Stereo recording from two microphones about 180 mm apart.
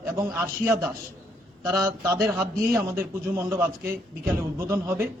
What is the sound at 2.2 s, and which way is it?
A man's voice, 10° right (ahead or behind).